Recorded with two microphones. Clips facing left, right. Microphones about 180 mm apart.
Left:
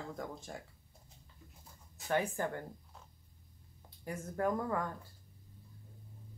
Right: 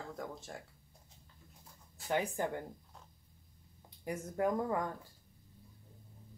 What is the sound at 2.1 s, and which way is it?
Speech, 15° right (ahead or behind).